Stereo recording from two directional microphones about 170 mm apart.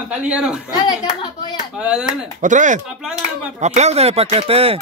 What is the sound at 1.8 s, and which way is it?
Speech, 5° right (ahead or behind).